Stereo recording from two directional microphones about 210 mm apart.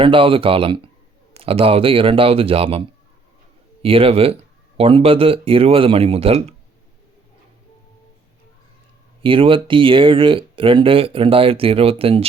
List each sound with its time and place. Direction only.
0.0 s speech: 25° right (ahead or behind)
3.8 s speech: 25° right (ahead or behind)
9.2 s speech: 25° right (ahead or behind)